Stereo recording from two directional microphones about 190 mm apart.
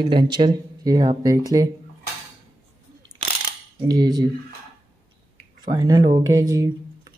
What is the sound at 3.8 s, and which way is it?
Speech, 20° right (ahead or behind).